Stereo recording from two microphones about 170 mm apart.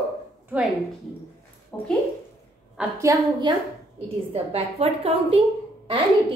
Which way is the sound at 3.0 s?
20° right (ahead or behind).